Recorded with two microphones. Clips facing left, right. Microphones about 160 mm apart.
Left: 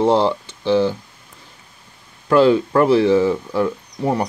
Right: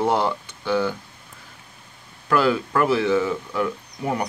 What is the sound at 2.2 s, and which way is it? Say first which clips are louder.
Speech: left 7 dB; 25° left (ahead or behind).